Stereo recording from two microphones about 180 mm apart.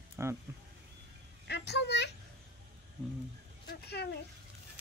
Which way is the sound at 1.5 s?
70° left (ahead or behind).